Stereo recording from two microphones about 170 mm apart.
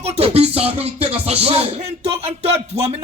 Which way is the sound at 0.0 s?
40° right (ahead or behind).